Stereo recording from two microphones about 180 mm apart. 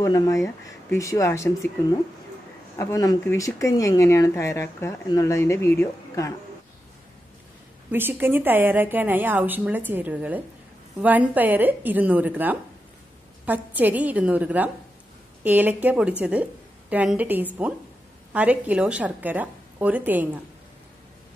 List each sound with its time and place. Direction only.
0.0 s speech: 20° left (ahead or behind)
7.9 s a woman's voice: 10° right (ahead or behind)